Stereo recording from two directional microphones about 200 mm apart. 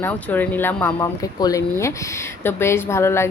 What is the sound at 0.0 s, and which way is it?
Speech, 10° left (ahead or behind).